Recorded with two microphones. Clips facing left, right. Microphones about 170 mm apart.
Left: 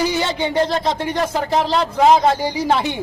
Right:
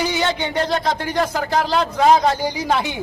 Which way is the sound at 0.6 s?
25° left (ahead or behind).